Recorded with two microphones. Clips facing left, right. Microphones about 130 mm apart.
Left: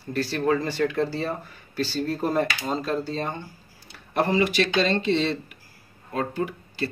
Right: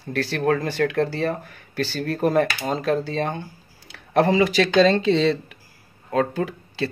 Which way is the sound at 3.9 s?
90° right.